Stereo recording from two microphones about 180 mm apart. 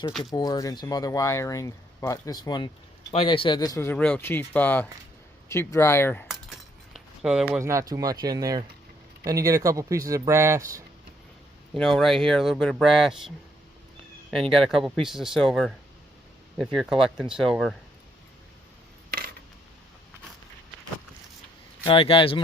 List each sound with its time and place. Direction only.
0.2 s speech: 20° left (ahead or behind)
6.9 s a sound: 5° right (ahead or behind)
7.6 s speech: 15° right (ahead or behind)
11.7 s speech: centre (ahead or behind)
14.5 s speech: centre (ahead or behind)
21.8 s speech: 30° left (ahead or behind)